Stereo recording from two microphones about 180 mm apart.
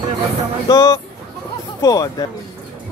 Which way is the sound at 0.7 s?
15° left (ahead or behind).